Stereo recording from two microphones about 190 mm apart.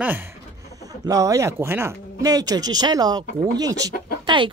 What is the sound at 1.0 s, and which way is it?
Speech, 20° right (ahead or behind).